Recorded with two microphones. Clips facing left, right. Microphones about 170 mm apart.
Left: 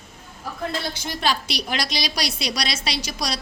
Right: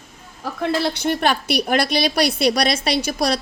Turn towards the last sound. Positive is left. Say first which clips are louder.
# right 8 dB
turn(degrees=-55)  # may be behind; listen again after turning